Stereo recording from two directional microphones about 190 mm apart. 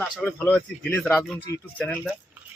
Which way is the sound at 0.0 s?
5° left (ahead or behind).